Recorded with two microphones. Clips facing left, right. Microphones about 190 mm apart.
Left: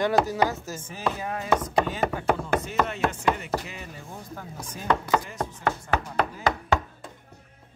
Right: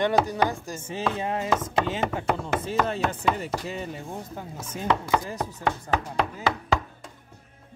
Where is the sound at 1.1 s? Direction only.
25° right (ahead or behind).